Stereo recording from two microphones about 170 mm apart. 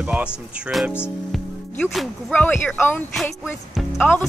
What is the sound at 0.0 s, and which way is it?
Speech, 5° right (ahead or behind).